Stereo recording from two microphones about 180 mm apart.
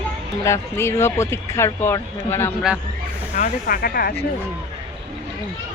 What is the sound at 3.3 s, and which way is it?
Speech, 50° left (ahead or behind).